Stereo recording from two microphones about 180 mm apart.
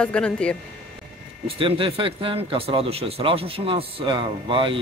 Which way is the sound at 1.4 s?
30° right (ahead or behind).